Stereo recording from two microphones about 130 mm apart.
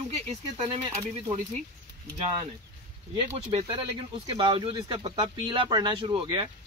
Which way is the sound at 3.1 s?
50° right (ahead or behind).